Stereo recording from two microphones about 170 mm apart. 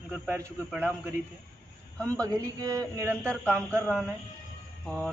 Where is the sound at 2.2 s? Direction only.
20° right (ahead or behind).